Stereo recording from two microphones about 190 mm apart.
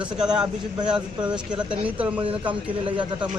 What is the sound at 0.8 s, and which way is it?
Speech, 5° right (ahead or behind).